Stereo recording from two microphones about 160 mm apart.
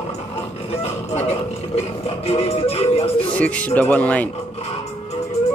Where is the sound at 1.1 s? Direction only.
40° left (ahead or behind).